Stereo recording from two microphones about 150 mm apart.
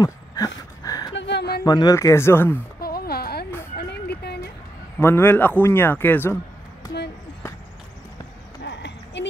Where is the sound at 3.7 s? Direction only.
90° left.